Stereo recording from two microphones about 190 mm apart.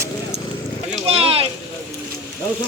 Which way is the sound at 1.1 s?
30° right (ahead or behind).